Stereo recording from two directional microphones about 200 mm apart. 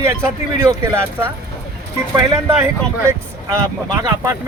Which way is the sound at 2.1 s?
15° right (ahead or behind).